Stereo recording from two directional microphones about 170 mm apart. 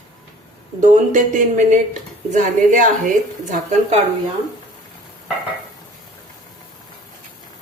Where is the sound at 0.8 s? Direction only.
50° right (ahead or behind).